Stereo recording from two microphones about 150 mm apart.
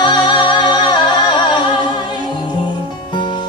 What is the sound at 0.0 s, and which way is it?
Singing, 30° left (ahead or behind).